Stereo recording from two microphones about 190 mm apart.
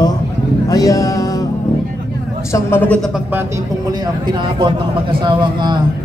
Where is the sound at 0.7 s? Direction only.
20° left (ahead or behind).